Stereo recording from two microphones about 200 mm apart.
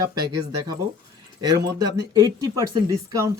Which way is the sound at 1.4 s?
20° right (ahead or behind).